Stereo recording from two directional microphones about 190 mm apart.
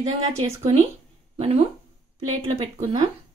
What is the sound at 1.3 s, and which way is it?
Speech, 35° right (ahead or behind).